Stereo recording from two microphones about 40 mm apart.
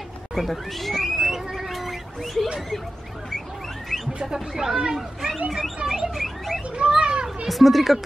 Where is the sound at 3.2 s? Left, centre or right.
Centre.